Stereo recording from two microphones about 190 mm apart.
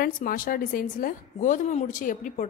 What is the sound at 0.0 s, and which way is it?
A woman's voice, 45° left (ahead or behind).